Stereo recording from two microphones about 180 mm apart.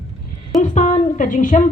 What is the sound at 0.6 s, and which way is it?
A woman's voice, 45° left (ahead or behind).